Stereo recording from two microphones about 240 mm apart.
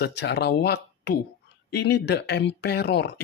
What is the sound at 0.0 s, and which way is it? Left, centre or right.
Speech, left.